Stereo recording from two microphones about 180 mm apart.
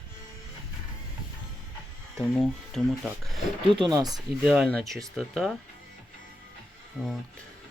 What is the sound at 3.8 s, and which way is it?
Speech, 20° right (ahead or behind).